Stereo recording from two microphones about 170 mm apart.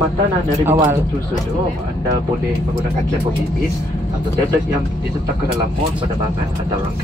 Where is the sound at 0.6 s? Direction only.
20° right (ahead or behind).